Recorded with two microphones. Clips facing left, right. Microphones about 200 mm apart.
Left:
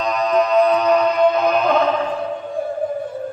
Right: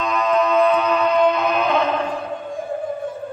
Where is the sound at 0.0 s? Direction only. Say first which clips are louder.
Left 1 dB; 40° left (ahead or behind).